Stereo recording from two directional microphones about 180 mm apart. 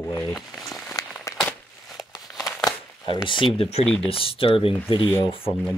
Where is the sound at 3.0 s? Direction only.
25° left (ahead or behind).